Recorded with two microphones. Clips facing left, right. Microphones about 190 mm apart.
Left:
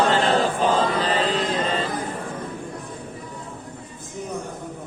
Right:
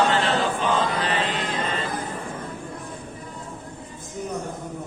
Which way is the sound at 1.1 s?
35° left (ahead or behind).